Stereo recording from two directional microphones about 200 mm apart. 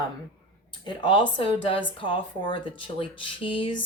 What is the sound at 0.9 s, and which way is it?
A woman's voice, 25° left (ahead or behind).